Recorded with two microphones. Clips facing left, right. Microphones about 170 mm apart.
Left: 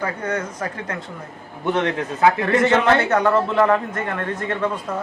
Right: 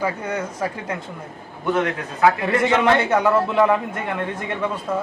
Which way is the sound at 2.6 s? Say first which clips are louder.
Right 1 dB; 10° right (ahead or behind).